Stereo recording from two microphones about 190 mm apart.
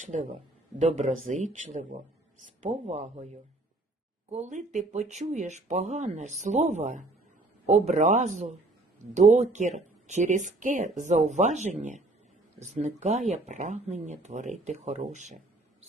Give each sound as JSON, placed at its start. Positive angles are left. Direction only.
{"t": 0.0, "sound": "speech", "side_deg": -40}
{"t": 4.3, "sound": "speech", "side_deg": -35}